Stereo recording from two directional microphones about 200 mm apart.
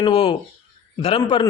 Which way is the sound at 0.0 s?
25° left (ahead or behind).